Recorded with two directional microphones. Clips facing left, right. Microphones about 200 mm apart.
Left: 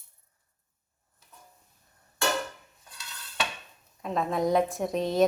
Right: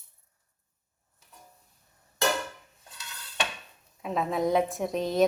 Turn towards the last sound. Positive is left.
turn(degrees=0)  # may be behind; listen again after turning